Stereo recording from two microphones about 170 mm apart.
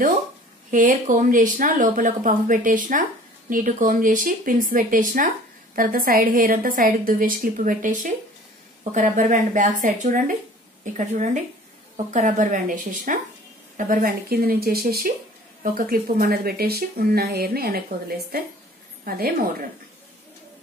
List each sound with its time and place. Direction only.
0.7 s speech: 50° right (ahead or behind)